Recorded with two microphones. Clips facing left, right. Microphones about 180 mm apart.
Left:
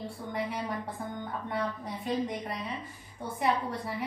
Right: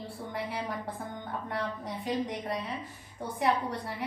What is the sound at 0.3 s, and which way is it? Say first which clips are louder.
A woman's voice: left 2 dB; centre (ahead or behind).